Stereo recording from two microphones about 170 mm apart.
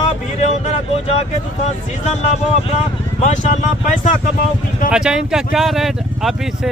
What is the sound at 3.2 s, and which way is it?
Speech, 45° left (ahead or behind).